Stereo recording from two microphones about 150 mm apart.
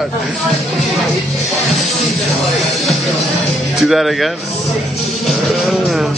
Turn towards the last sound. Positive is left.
turn(degrees=0)  # may be behind; listen again after turning